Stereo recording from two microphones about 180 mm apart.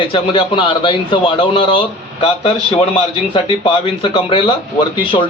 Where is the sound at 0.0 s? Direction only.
30° left (ahead or behind).